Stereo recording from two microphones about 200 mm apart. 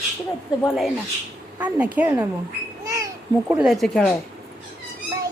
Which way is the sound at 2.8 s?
15° right (ahead or behind).